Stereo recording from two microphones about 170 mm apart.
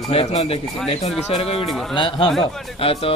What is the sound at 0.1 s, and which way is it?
Music, 35° left (ahead or behind).